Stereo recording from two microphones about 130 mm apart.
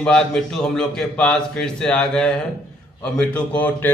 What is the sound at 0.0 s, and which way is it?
A man's voice, 5° left (ahead or behind).